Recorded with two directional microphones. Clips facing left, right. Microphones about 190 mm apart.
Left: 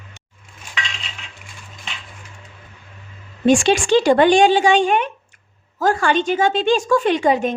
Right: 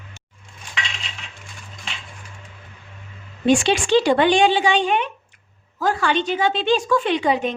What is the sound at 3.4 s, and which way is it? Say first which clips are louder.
A woman's voice: left 3 dB; 45° left (ahead or behind).